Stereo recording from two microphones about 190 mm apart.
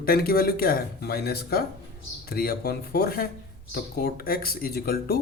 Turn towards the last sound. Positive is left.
turn(degrees=55)  # may be behind; listen again after turning